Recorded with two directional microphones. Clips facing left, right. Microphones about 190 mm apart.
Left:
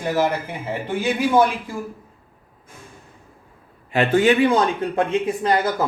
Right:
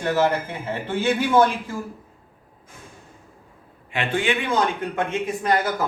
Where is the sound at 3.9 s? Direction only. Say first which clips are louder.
Left 7 dB; 40° left (ahead or behind).